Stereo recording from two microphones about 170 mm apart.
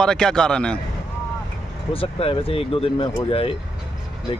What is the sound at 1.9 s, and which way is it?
Speech, 35° left (ahead or behind).